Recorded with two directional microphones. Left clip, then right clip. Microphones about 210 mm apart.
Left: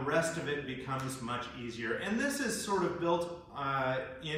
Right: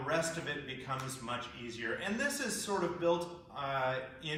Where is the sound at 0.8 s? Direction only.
30° right (ahead or behind).